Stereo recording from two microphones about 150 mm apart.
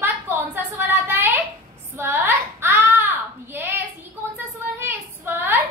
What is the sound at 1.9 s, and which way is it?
Child singing, 15° right (ahead or behind).